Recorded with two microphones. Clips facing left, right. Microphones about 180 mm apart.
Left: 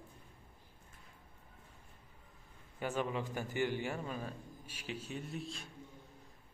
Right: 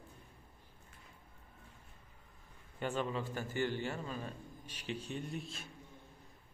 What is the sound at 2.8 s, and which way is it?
A man's voice, 10° left (ahead or behind).